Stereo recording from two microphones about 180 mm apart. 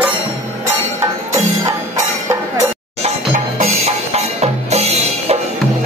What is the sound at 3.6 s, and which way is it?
Music, 35° right (ahead or behind).